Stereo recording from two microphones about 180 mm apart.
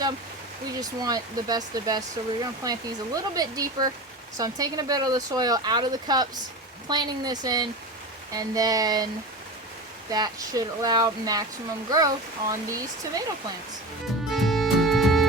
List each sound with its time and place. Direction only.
0.8 s speech: 20° right (ahead or behind)
10.1 s speech: 20° right (ahead or behind)
14.3 s music: centre (ahead or behind)